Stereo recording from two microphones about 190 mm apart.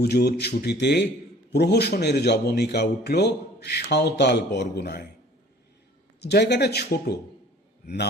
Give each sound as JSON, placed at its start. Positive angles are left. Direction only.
{"t": 0.0, "sound": "a man's voice", "side_deg": 55}
{"t": 6.1, "sound": "a man's voice", "side_deg": 60}